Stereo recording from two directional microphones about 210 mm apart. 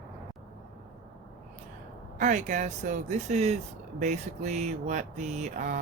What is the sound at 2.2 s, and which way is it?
Mantra, 35° right (ahead or behind).